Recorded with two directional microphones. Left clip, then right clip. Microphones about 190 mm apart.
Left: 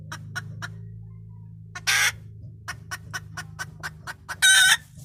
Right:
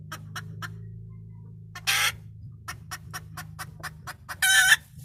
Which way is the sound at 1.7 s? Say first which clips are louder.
Left 3 dB; 15° left (ahead or behind).